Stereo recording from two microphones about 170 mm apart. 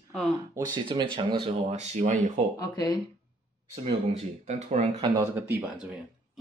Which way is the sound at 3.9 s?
40° right (ahead or behind).